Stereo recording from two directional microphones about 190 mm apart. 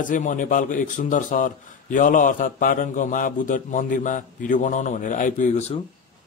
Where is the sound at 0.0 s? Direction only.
45° left (ahead or behind).